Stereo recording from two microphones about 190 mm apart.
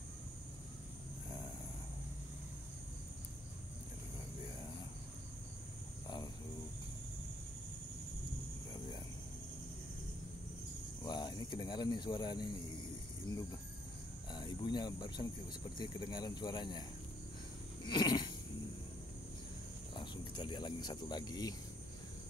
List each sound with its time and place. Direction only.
11.1 s speech: 20° left (ahead or behind)
14.3 s cricket: 20° left (ahead or behind)
15.8 s speech: 25° left (ahead or behind)
17.8 s a sound: 25° left (ahead or behind)
20.0 s speech: 25° left (ahead or behind)